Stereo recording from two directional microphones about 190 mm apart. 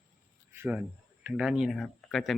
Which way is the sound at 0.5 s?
10° right (ahead or behind).